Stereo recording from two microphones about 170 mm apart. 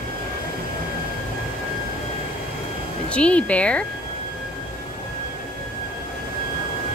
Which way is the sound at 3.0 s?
5° left (ahead or behind).